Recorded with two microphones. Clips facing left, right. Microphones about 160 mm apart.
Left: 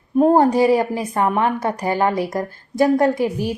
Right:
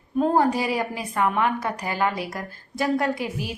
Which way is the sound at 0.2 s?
50° left (ahead or behind).